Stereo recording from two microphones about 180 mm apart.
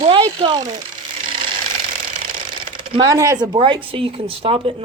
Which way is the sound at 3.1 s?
20° right (ahead or behind).